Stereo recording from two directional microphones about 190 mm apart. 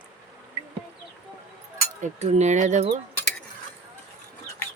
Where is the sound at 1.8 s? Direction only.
35° right (ahead or behind).